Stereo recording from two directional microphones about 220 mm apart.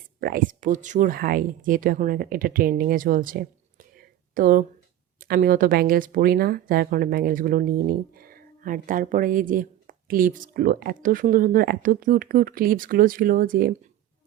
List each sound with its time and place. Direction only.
0.2 s speech: 40° right (ahead or behind)
3.9 s whispering: 40° right (ahead or behind)
5.2 s speech: 40° right (ahead or behind)